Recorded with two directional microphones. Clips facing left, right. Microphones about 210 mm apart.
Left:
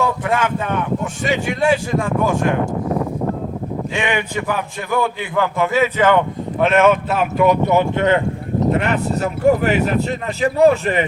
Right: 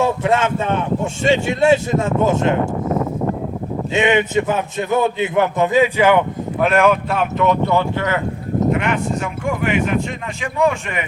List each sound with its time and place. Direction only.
0.0 s speech: 25° right (ahead or behind)
3.9 s a man's voice: 20° right (ahead or behind); by 8.2 s 25° left (ahead or behind)
9.1 s speech: 35° left (ahead or behind)